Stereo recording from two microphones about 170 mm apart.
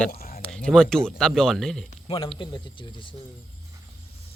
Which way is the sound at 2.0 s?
30° left (ahead or behind).